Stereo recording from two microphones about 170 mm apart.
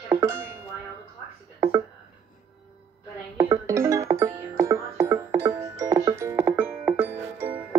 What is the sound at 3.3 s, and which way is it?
Music, 20° right (ahead or behind).